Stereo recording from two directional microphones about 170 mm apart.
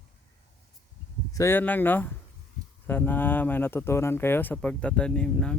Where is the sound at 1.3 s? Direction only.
15° left (ahead or behind).